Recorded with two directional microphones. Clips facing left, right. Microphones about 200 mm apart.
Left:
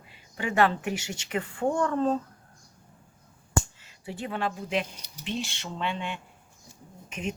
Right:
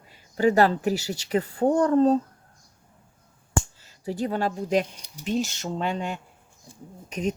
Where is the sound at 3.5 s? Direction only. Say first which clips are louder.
Right 1 dB; 40° right (ahead or behind).